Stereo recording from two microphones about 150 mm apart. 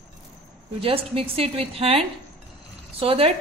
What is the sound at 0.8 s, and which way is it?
A woman's voice, 40° right (ahead or behind).